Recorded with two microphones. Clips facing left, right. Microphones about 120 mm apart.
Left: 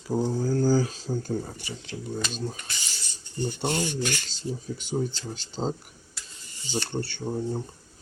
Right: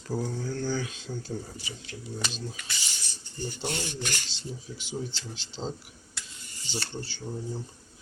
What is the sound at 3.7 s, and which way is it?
Speech, 45° left (ahead or behind).